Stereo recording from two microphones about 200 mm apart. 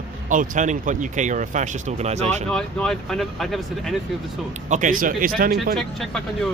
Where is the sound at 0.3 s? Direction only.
40° right (ahead or behind).